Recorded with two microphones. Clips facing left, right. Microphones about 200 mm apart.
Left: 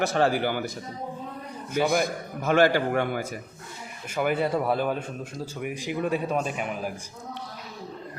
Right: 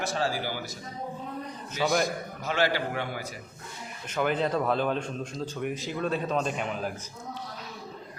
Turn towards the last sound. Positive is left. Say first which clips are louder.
# even
turn(degrees=10)  # may be behind; listen again after turning